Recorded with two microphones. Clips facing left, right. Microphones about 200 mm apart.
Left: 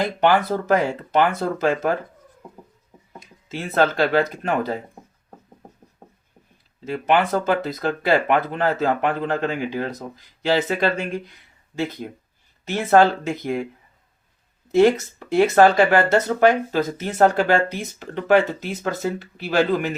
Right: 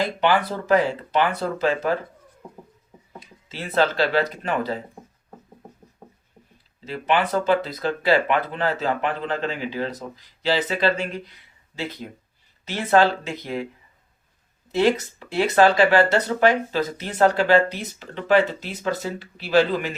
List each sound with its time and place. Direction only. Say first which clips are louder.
0.2 s speech: left 5 dB; 45° left (ahead or behind)
3.2 s speech: left 4 dB; 50° left (ahead or behind)
6.8 s speech: left 3 dB; 50° left (ahead or behind)
14.7 s speech: left 4 dB; 50° left (ahead or behind)